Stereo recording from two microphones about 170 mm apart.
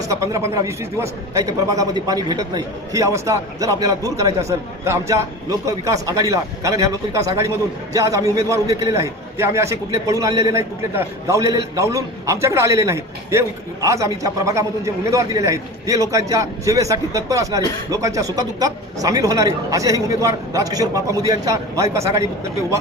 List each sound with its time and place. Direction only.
0.0 s a man's voice: 20° right (ahead or behind)